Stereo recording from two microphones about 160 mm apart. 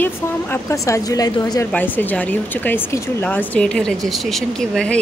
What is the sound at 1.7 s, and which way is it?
Speech, 10° left (ahead or behind).